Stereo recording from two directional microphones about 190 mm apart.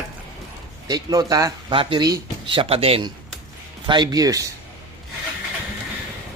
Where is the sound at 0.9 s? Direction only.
20° right (ahead or behind).